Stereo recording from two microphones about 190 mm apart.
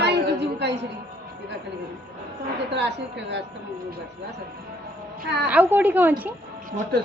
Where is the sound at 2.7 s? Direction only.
65° right (ahead or behind).